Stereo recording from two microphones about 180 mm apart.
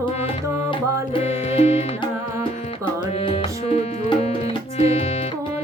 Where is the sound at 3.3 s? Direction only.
35° left (ahead or behind).